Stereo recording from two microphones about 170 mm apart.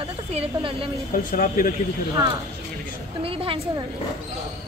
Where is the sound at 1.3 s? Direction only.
55° left (ahead or behind).